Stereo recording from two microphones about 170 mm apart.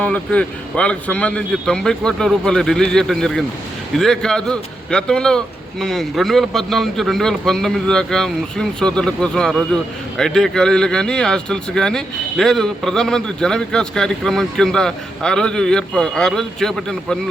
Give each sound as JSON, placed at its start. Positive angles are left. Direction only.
{"t": 0.0, "sound": "a man's voice", "side_deg": 5}